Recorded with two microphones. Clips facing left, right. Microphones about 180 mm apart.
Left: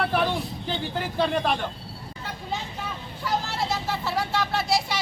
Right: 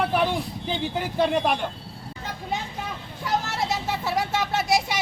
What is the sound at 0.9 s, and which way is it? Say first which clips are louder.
Speech: right 2 dB; 15° right (ahead or behind).